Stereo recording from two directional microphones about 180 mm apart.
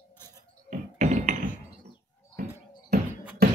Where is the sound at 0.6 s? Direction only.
40° right (ahead or behind).